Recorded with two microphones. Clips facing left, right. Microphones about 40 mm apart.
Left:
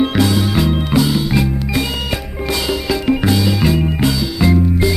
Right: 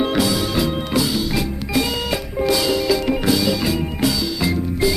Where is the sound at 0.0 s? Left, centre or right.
Centre.